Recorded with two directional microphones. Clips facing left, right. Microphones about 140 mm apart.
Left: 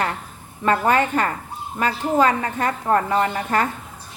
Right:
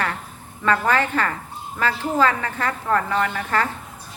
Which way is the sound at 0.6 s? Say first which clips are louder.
Left 2 dB; 20° left (ahead or behind).